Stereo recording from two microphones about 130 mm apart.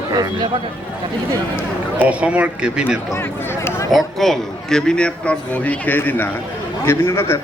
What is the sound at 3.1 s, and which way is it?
Speech, 20° left (ahead or behind).